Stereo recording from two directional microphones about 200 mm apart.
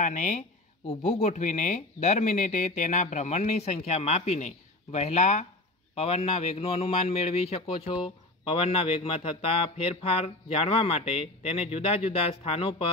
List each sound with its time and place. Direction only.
0.0 s a man's voice: 40° left (ahead or behind)